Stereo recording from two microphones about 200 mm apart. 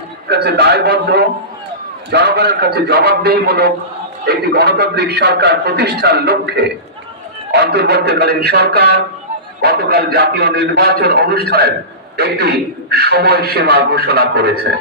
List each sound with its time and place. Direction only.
0.3 s a man's voice: 55° right (ahead or behind)